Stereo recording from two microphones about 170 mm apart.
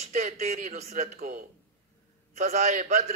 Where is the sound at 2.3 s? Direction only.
40° right (ahead or behind).